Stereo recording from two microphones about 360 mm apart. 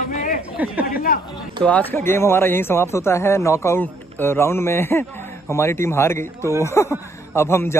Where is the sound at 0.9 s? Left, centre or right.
Left.